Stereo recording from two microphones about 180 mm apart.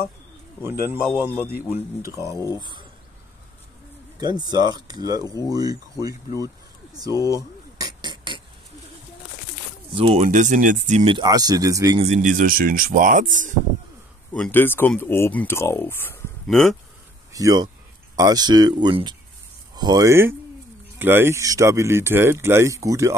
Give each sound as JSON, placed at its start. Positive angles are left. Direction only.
{"t": 0.6, "sound": "speech", "side_deg": -15}
{"t": 4.2, "sound": "speech", "side_deg": -25}
{"t": 7.2, "sound": "speech", "side_deg": 15}
{"t": 7.7, "sound": "beatboxing", "side_deg": -25}
{"t": 9.9, "sound": "speech", "side_deg": -40}
{"t": 11.1, "sound": "speech", "side_deg": -25}
{"t": 12.0, "sound": "speech", "side_deg": -40}
{"t": 14.3, "sound": "speech", "side_deg": 10}
{"t": 16.4, "sound": "speech", "side_deg": 0}
{"t": 17.3, "sound": "speech", "side_deg": -20}